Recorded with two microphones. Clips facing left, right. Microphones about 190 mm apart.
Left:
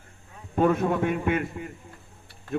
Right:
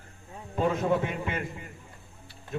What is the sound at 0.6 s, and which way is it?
A man's voice, 55° left (ahead or behind).